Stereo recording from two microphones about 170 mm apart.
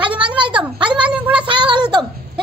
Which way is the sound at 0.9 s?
5° right (ahead or behind).